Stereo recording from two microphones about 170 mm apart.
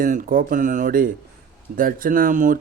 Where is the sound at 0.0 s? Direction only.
55° right (ahead or behind).